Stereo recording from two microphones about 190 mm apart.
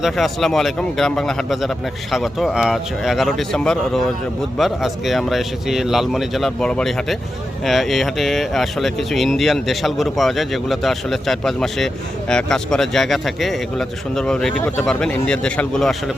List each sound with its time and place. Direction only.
0.0 s speech: centre (ahead or behind)